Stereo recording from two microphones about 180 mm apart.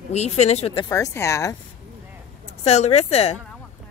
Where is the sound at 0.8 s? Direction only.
15° left (ahead or behind).